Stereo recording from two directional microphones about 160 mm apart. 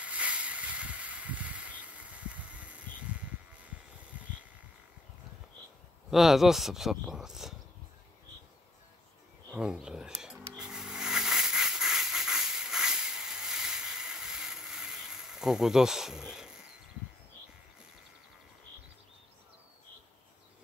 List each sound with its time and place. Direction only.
0.0 s a sound: 5° right (ahead or behind)
6.0 s speech: centre (ahead or behind)
9.5 s speech: 5° right (ahead or behind)
10.6 s hiss: 5° right (ahead or behind)